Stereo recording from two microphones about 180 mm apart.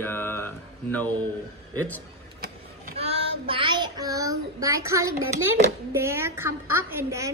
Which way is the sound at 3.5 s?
25° right (ahead or behind).